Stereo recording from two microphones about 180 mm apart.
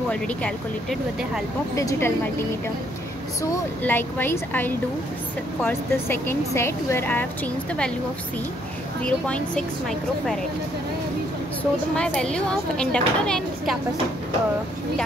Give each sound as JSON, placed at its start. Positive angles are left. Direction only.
{"t": 0.1, "sound": "speech", "side_deg": 5}
{"t": 1.8, "sound": "speech", "side_deg": 15}
{"t": 3.5, "sound": "speech", "side_deg": 10}
{"t": 11.9, "sound": "speech", "side_deg": 5}